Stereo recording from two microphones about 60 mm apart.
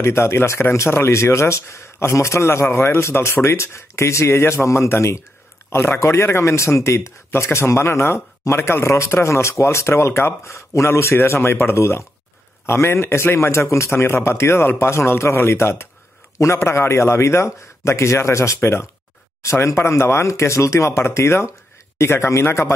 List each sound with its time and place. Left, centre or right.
0.0 s a man's voice: left